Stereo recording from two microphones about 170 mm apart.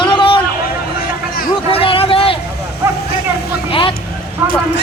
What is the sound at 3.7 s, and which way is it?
Vehicle, 30° left (ahead or behind).